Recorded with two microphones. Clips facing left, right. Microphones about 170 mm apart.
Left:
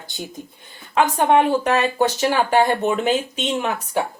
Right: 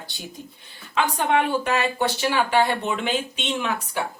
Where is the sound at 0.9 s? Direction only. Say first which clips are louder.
Left 5 dB; 45° left (ahead or behind).